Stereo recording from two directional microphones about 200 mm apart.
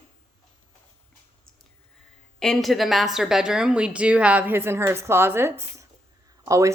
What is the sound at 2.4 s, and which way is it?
Speech, centre (ahead or behind).